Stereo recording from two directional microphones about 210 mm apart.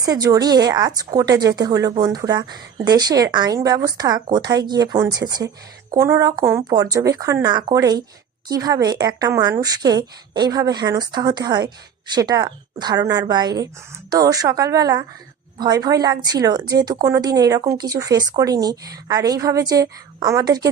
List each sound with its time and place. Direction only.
0.0 s a woman's voice: 15° right (ahead or behind)